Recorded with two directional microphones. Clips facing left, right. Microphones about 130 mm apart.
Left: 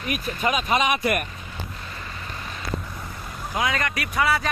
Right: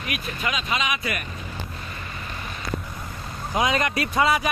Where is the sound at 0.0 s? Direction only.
45° left (ahead or behind).